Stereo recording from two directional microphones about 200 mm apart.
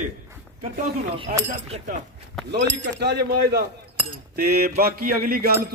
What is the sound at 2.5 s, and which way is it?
Speech, 60° right (ahead or behind).